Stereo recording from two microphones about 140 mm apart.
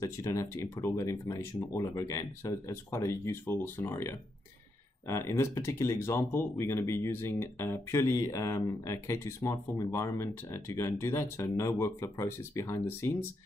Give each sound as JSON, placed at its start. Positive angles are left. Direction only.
{"t": 0.0, "sound": "speech", "side_deg": 20}